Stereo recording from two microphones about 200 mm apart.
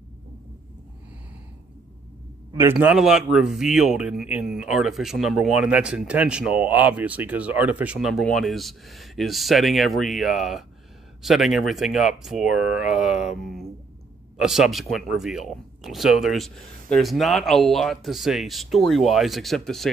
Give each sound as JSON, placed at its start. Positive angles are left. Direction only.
{"t": 2.5, "sound": "speech", "side_deg": -10}